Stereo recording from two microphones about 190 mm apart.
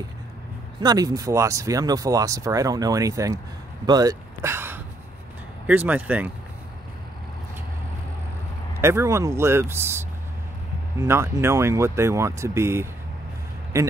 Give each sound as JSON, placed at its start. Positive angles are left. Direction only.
{"t": 0.7, "sound": "speech", "side_deg": -20}
{"t": 8.8, "sound": "speech", "side_deg": -15}